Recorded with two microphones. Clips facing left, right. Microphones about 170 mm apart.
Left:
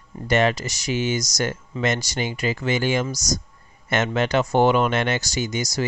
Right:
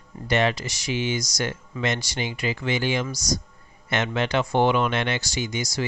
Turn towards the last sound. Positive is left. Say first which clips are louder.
# left 3 dB
turn(degrees=40)  # may be behind; listen again after turning